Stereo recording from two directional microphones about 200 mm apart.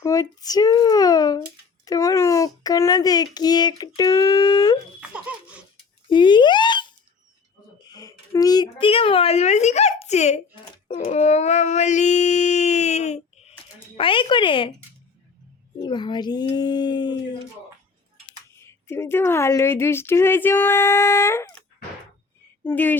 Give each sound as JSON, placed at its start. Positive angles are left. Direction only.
{"t": 0.0, "sound": "a child's voice", "side_deg": 15}
{"t": 4.9, "sound": "baby laughter", "side_deg": -5}
{"t": 6.1, "sound": "a child's voice", "side_deg": 25}
{"t": 10.9, "sound": "a sound", "side_deg": 35}
{"t": 13.9, "sound": "a child's voice", "side_deg": 25}
{"t": 15.8, "sound": "a child's voice", "side_deg": 20}
{"t": 18.6, "sound": "speech", "side_deg": 10}
{"t": 22.6, "sound": "speech", "side_deg": 10}